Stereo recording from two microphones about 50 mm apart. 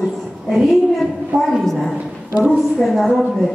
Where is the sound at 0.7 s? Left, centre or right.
Centre.